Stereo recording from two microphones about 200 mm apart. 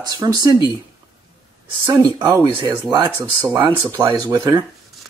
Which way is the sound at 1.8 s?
20° right (ahead or behind).